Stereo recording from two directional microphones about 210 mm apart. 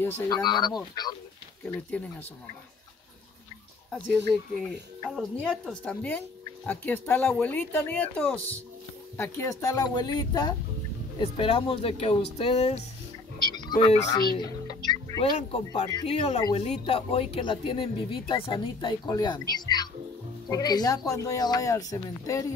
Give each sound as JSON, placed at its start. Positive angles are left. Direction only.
{"t": 0.0, "sound": "speech", "side_deg": 20}
{"t": 1.6, "sound": "speech", "side_deg": 10}
{"t": 5.0, "sound": "speech", "side_deg": 5}
{"t": 13.5, "sound": "a sound", "side_deg": 20}
{"t": 14.2, "sound": "speech", "side_deg": 20}